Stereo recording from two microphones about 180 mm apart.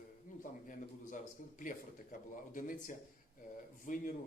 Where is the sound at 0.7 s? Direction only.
45° left (ahead or behind).